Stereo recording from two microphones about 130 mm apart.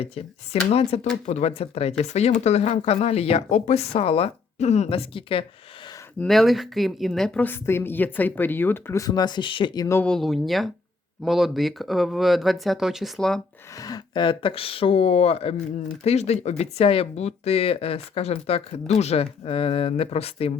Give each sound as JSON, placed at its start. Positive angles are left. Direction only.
{"t": 0.0, "sound": "speech", "side_deg": 50}
{"t": 6.2, "sound": "speech", "side_deg": 0}
{"t": 9.9, "sound": "speech", "side_deg": 10}
{"t": 13.7, "sound": "speech", "side_deg": 30}